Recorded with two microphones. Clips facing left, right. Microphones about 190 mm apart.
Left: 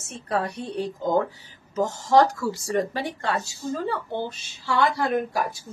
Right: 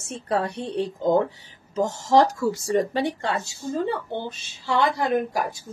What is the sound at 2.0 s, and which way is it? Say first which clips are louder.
Speech: even; 25° right (ahead or behind).